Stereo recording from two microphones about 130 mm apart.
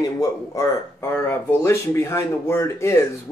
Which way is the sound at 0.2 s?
20° left (ahead or behind).